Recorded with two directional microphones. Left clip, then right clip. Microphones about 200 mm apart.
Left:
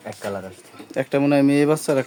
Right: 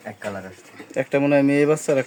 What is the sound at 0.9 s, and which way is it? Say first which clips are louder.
Speech: even; 5° left (ahead or behind).